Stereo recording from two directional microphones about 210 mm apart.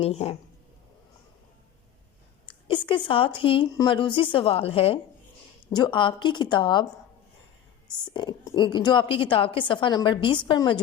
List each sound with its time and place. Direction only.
0.0 s a woman's voice: 30° left (ahead or behind)
2.6 s a woman's voice: 25° left (ahead or behind)
7.9 s a woman's voice: 20° left (ahead or behind)